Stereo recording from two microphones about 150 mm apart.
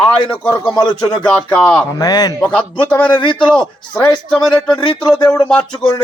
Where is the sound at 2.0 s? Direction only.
25° left (ahead or behind).